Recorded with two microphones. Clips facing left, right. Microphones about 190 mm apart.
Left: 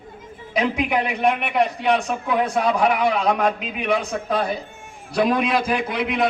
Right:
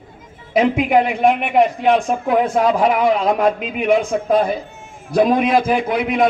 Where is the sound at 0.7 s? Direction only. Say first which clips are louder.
Right 7 dB; 50° right (ahead or behind).